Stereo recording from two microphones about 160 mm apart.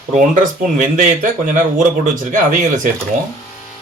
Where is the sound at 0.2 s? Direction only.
55° right (ahead or behind).